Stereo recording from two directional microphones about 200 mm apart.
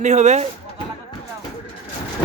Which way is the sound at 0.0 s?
35° right (ahead or behind).